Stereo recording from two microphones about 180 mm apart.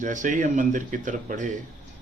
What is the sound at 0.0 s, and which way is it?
Speech, 45° right (ahead or behind).